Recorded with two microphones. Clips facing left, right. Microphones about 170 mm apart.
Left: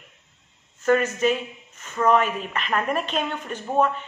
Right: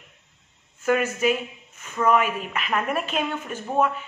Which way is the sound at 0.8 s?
10° right (ahead or behind).